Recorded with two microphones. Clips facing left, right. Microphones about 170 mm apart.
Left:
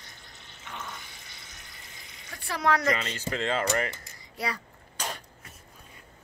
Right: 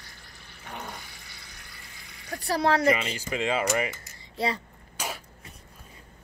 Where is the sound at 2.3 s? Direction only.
35° right (ahead or behind).